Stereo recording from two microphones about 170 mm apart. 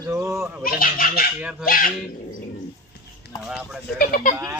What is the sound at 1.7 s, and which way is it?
Speech, 55° left (ahead or behind).